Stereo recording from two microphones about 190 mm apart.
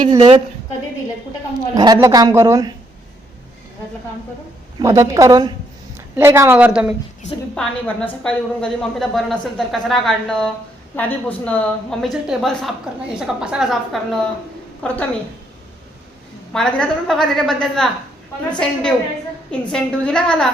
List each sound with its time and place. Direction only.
0.2 s a woman's voice: 30° right (ahead or behind)
1.7 s a woman's voice: 20° right (ahead or behind)
4.8 s a woman's voice: 15° right (ahead or behind)
7.5 s a woman's voice: 5° left (ahead or behind)
16.5 s a woman's voice: 5° left (ahead or behind)